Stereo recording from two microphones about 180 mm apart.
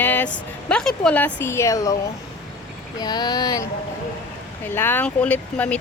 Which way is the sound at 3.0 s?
25° left (ahead or behind).